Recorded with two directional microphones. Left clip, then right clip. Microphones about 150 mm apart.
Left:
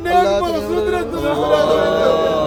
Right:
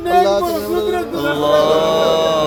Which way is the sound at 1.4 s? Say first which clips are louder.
Right 2 dB; 30° right (ahead or behind).